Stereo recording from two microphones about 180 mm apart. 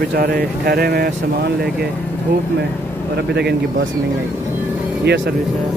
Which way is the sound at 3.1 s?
65° right (ahead or behind).